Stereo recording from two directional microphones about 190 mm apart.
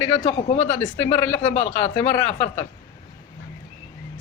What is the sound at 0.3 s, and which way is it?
Speech, 35° left (ahead or behind).